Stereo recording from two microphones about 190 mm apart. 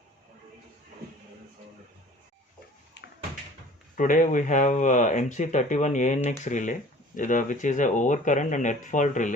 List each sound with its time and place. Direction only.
3.0 s basketball bounce: 65° left (ahead or behind)
3.9 s speech: 45° left (ahead or behind)